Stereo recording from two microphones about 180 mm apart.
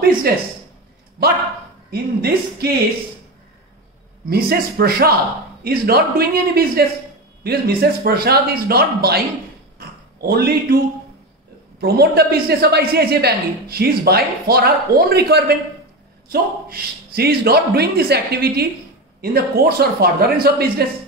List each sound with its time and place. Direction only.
0.3 s a woman's voice: 60° right (ahead or behind)
1.9 s a woman's voice: 60° right (ahead or behind)
4.3 s a woman's voice: 60° right (ahead or behind)
9.8 s a sound: 55° right (ahead or behind)
11.8 s a woman's voice: 60° right (ahead or behind)